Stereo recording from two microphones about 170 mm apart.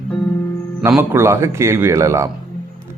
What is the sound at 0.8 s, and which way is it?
A man's voice, 15° right (ahead or behind).